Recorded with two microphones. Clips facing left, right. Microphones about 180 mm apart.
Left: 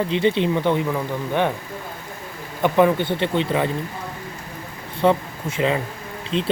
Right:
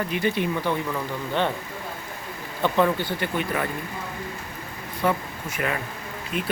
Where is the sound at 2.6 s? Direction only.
15° left (ahead or behind).